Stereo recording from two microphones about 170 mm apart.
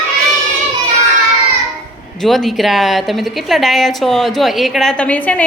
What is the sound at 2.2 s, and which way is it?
A woman's voice, centre (ahead or behind).